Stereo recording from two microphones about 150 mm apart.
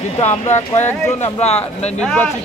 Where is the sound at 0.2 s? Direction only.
50° left (ahead or behind).